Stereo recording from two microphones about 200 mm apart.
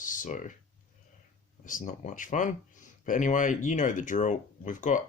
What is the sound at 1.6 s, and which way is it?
Speech, 40° left (ahead or behind).